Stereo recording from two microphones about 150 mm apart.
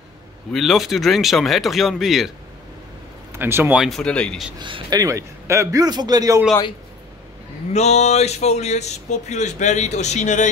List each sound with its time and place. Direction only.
0.5 s speech: centre (ahead or behind)
3.3 s speech: 15° right (ahead or behind); by 4.5 s 5° left (ahead or behind)
4.6 s a man's voice: 30° right (ahead or behind)
7.7 s speech: 45° left (ahead or behind)